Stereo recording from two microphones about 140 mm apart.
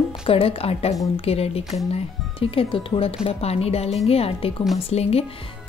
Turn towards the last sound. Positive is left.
turn(degrees=45)  # may be behind; listen again after turning